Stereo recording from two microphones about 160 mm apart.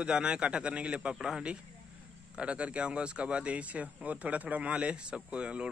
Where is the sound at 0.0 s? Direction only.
5° right (ahead or behind).